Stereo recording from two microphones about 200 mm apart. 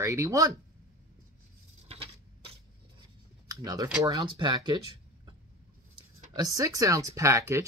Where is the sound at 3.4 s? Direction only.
20° right (ahead or behind).